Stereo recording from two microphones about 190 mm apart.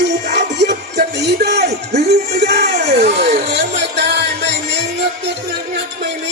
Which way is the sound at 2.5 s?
60° right (ahead or behind).